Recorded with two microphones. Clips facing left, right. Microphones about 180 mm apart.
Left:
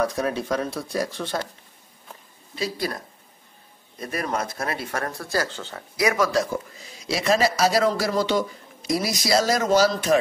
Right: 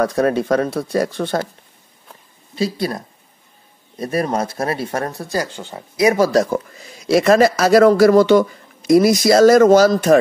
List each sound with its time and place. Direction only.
0.0 s speech: 60° right (ahead or behind)
2.5 s speech: 30° right (ahead or behind)
4.0 s speech: 30° right (ahead or behind)
7.1 s speech: 50° right (ahead or behind)